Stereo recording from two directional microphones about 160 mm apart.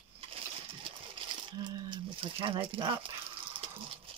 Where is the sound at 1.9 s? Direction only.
30° right (ahead or behind).